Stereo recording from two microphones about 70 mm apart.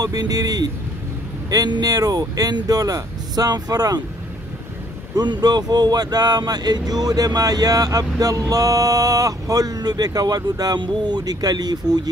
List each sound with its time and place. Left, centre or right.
0.0 s speech: right
5.1 s speech: right